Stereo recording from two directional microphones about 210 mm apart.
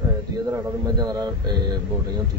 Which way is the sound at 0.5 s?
20° right (ahead or behind).